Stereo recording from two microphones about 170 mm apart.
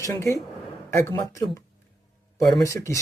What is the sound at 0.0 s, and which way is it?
Speech, 20° left (ahead or behind).